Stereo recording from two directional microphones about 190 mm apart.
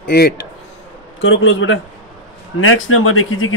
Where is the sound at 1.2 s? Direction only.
90° left.